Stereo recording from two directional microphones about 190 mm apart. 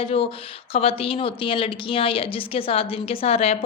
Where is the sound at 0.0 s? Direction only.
30° left (ahead or behind).